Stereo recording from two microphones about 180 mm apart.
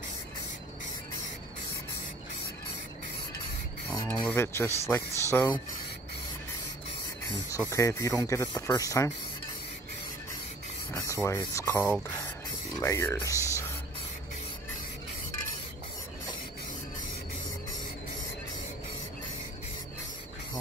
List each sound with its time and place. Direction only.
4.1 s speech: 10° left (ahead or behind)
7.5 s speech: 15° left (ahead or behind)
10.9 s rub: 20° left (ahead or behind)
11.2 s speech: 15° left (ahead or behind)